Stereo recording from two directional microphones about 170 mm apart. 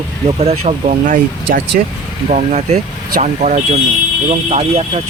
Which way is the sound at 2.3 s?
40° right (ahead or behind).